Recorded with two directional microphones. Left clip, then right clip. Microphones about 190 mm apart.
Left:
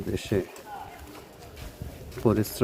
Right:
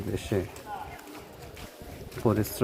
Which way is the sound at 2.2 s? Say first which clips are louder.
Left 2 dB; 35° left (ahead or behind).